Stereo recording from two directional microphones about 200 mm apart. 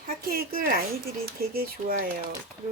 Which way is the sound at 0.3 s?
45° right (ahead or behind).